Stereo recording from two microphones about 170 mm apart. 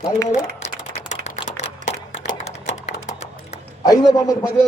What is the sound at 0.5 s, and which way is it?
Typing, 40° left (ahead or behind).